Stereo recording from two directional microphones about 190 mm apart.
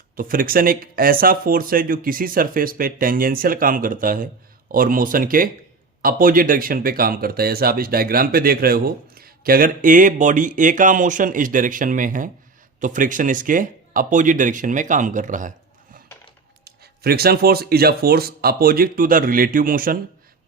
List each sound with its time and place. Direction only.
0.2 s speech: 50° right (ahead or behind)
16.6 s speech: 55° right (ahead or behind)